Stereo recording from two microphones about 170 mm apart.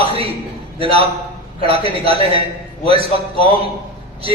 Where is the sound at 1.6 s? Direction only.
35° right (ahead or behind).